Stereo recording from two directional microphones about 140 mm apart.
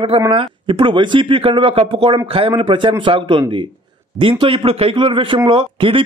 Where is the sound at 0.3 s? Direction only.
40° right (ahead or behind).